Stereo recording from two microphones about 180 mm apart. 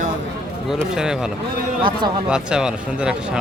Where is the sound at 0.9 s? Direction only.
5° right (ahead or behind).